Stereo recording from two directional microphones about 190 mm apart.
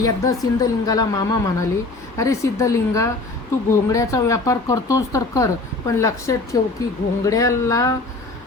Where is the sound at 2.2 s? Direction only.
15° left (ahead or behind).